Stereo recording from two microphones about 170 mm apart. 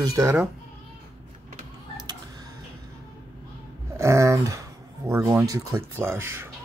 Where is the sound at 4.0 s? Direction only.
15° right (ahead or behind).